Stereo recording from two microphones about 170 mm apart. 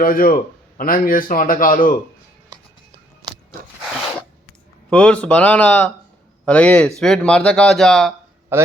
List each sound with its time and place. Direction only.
0.0 s a man's voice: 55° left (ahead or behind)
4.9 s speech: 5° left (ahead or behind)
8.5 s a man's voice: 15° right (ahead or behind)